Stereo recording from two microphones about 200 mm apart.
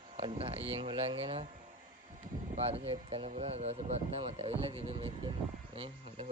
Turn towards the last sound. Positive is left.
turn(degrees=-30)  # may be behind; listen again after turning